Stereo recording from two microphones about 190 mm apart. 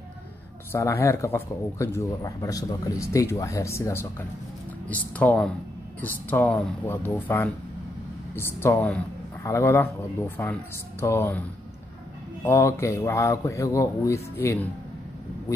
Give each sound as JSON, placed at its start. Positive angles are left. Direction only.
{"t": 0.7, "sound": "speech", "side_deg": 15}
{"t": 12.4, "sound": "speech", "side_deg": 15}